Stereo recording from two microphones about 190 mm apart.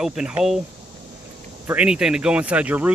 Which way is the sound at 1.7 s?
5° right (ahead or behind).